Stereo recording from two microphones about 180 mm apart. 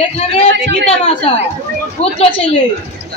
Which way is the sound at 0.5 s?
70° right (ahead or behind).